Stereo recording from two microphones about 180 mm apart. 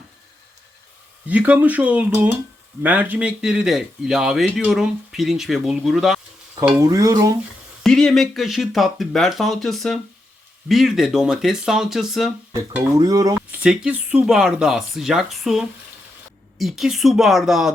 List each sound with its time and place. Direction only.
1.3 s speech: 10° right (ahead or behind)
6.7 s stir: 20° right (ahead or behind)
7.9 s speech: 5° left (ahead or behind)
12.5 s speech: 15° right (ahead or behind)
13.6 s speech: 5° right (ahead or behind)